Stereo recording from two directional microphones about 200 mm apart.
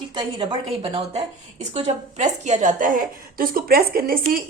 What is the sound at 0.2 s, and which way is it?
A woman's voice, 25° right (ahead or behind).